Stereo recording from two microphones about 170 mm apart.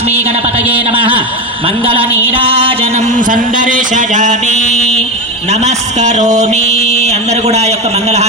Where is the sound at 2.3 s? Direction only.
35° right (ahead or behind).